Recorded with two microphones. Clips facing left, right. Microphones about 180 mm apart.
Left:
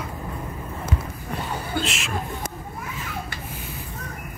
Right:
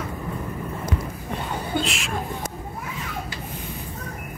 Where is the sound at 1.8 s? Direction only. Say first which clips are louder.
Even; centre (ahead or behind).